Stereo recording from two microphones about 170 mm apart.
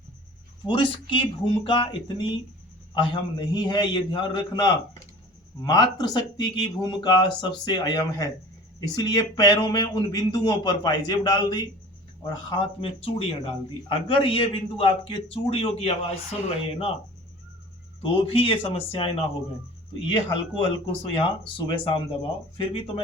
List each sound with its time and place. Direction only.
0.6 s speech: 30° left (ahead or behind)
18.0 s speech: 30° left (ahead or behind)